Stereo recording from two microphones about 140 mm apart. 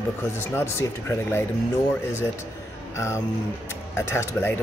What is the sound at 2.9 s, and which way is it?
Speech, 20° left (ahead or behind).